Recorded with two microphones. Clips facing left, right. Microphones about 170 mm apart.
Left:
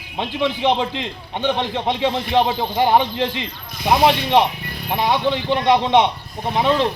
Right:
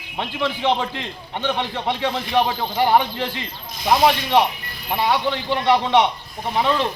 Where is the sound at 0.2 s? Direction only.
20° left (ahead or behind).